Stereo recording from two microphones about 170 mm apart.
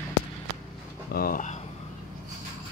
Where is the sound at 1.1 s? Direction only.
60° left (ahead or behind).